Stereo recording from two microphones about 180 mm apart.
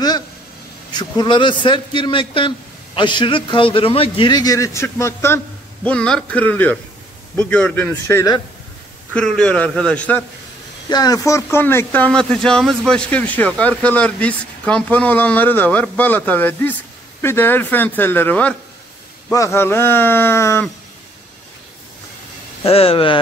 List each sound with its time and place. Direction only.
0.9 s a man's voice: 25° left (ahead or behind); by 10.2 s 10° left (ahead or behind)
10.9 s speech: 20° left (ahead or behind)
22.6 s speech: 30° left (ahead or behind)